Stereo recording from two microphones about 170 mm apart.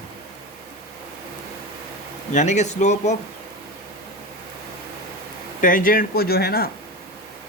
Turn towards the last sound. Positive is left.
turn(degrees=65)  # may be behind; listen again after turning